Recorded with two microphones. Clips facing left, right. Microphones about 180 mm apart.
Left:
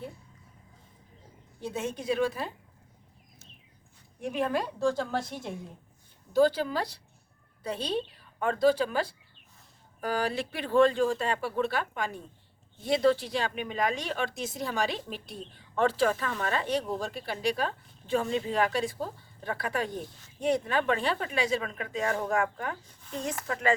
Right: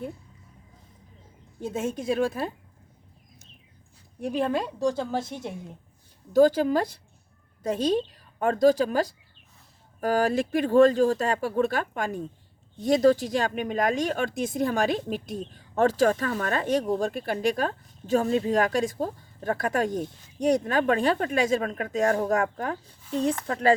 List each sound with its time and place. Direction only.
1.6 s speech: 45° right (ahead or behind)
4.2 s a woman's voice: 30° right (ahead or behind)
6.3 s a woman's voice: 45° right (ahead or behind)